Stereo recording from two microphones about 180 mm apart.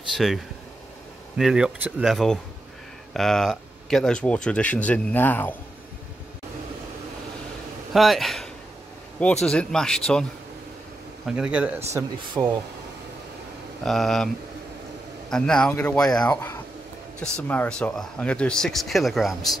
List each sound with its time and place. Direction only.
0.1 s speech: centre (ahead or behind)
1.4 s speech: 5° right (ahead or behind)
7.9 s speech: centre (ahead or behind)
11.2 s speech: 5° right (ahead or behind)
12.4 s speech: 20° right (ahead or behind)
13.8 s speech: centre (ahead or behind)